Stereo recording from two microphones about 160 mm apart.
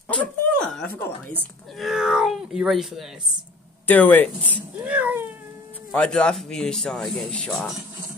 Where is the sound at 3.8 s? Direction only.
10° left (ahead or behind).